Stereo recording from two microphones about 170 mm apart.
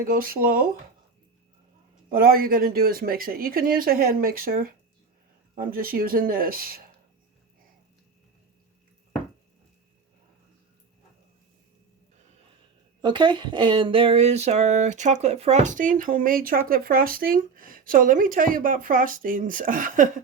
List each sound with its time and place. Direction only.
0.0 s speech: 60° right (ahead or behind)
2.0 s speech: 60° right (ahead or behind)
13.0 s speech: 25° right (ahead or behind); by 20.1 s 50° right (ahead or behind)